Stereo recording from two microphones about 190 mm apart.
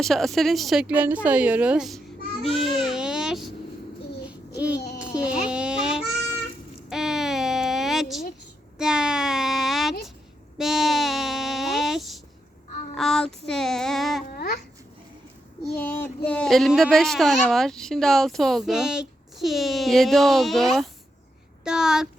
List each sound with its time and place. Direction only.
0.0 s speech: centre (ahead or behind)
2.6 s baby cry: centre (ahead or behind)
4.9 s baby cry: 5° right (ahead or behind)
6.9 s a sound: centre (ahead or behind)
10.6 s sheep: centre (ahead or behind)
12.9 s child singing: centre (ahead or behind)
14.3 s babbling: 50° left (ahead or behind)
15.7 s speech: 10° left (ahead or behind)